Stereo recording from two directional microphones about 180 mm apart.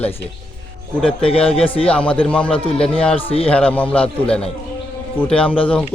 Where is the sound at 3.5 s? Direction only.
5° left (ahead or behind).